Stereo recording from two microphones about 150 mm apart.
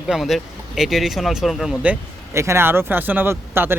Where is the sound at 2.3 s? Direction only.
15° right (ahead or behind).